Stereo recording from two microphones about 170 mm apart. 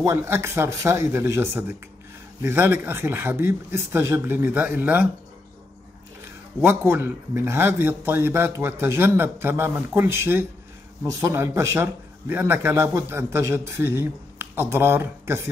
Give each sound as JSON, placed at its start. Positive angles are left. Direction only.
{"t": 0.0, "sound": "speech", "side_deg": -15}
{"t": 6.6, "sound": "speech", "side_deg": -15}